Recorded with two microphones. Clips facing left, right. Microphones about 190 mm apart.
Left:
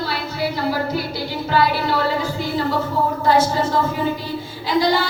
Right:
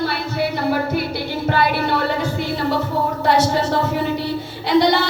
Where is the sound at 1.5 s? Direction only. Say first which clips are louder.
Left 1 dB; 60° right (ahead or behind).